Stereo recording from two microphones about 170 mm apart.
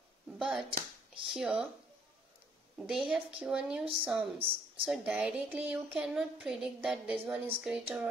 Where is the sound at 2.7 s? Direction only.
5° right (ahead or behind).